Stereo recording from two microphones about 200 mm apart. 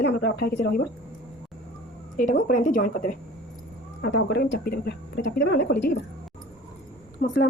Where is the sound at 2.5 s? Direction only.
40° left (ahead or behind).